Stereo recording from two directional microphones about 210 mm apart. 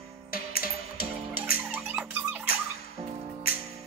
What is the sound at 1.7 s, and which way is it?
Squeak, 5° right (ahead or behind).